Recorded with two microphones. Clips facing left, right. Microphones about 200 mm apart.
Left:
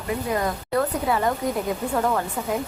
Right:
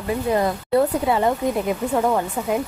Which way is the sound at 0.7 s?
25° right (ahead or behind).